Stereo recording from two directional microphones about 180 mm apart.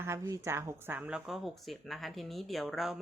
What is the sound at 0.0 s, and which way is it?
Speech, 15° right (ahead or behind).